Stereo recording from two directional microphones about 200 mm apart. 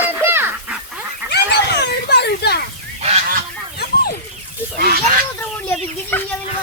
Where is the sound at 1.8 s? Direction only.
55° left (ahead or behind).